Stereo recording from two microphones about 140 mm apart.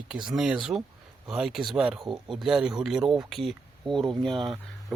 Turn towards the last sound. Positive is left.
turn(degrees=0)  # may be behind; listen again after turning